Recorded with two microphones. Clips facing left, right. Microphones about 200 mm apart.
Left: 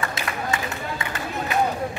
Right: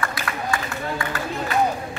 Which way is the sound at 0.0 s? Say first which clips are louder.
Right 1 dB; 20° left (ahead or behind).